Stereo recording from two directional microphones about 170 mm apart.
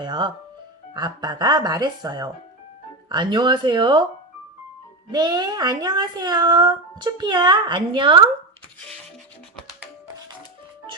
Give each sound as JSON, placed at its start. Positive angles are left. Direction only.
{"t": 0.0, "sound": "speech", "side_deg": -25}
{"t": 5.1, "sound": "speech", "side_deg": -25}